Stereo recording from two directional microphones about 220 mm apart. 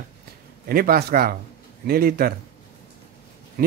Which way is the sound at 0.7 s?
45° right (ahead or behind).